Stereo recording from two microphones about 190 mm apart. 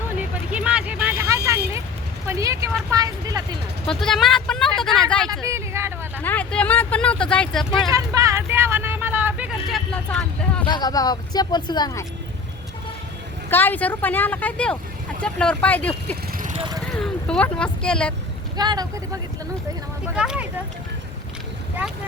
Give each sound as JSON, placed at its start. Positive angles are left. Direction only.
{"t": 0.2, "sound": "vehicle", "side_deg": -5}
{"t": 2.2, "sound": "speech", "side_deg": -15}
{"t": 3.8, "sound": "speech", "side_deg": 0}
{"t": 5.3, "sound": "a sound", "side_deg": -15}
{"t": 6.2, "sound": "vehicle", "side_deg": 5}
{"t": 7.9, "sound": "a sound", "side_deg": -15}
{"t": 10.7, "sound": "speech", "side_deg": 20}
{"t": 13.5, "sound": "speech", "side_deg": 10}
{"t": 16.6, "sound": "vehicle", "side_deg": -20}
{"t": 16.9, "sound": "speech", "side_deg": 5}
{"t": 18.5, "sound": "speech", "side_deg": -20}
{"t": 20.1, "sound": "speech", "side_deg": -5}